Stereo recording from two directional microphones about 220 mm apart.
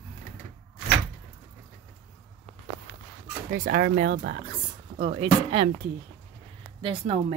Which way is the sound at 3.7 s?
45° right (ahead or behind).